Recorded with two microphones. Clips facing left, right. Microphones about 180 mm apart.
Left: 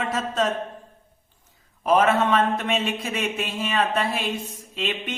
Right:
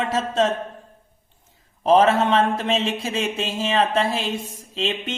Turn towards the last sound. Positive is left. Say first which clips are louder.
# right 3 dB
turn(degrees=-25)  # may be behind; listen again after turning